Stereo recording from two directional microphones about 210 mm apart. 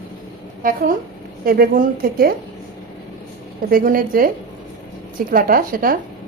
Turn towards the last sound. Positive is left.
turn(degrees=-45)  # may be behind; listen again after turning